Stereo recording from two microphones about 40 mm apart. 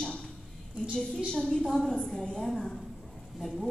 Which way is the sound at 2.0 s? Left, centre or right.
Centre.